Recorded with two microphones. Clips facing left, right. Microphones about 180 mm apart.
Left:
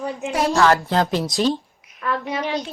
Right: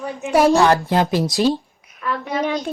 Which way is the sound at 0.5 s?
15° right (ahead or behind).